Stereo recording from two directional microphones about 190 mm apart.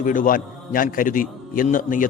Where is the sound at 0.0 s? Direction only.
45° left (ahead or behind).